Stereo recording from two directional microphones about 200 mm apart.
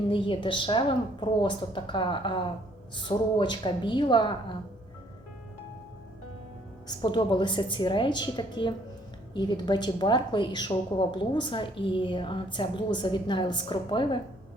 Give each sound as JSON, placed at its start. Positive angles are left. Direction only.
{"t": 0.1, "sound": "a woman's voice", "side_deg": 25}
{"t": 6.8, "sound": "a woman's voice", "side_deg": 25}